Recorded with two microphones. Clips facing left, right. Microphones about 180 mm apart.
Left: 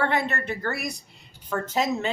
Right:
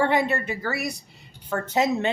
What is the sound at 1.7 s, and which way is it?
Speech, 65° right (ahead or behind).